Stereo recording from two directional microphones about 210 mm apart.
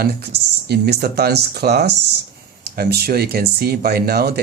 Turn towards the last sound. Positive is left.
turn(degrees=-50)  # may be behind; listen again after turning